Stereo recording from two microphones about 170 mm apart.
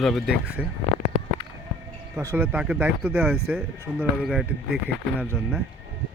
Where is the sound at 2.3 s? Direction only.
10° right (ahead or behind).